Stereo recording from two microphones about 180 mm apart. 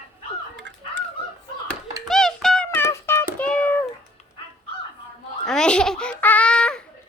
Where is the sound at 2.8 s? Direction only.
15° left (ahead or behind).